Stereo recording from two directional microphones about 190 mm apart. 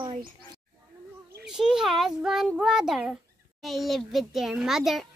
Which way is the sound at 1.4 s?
5° right (ahead or behind).